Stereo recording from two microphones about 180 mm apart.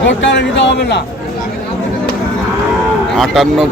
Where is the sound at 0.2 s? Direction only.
80° left.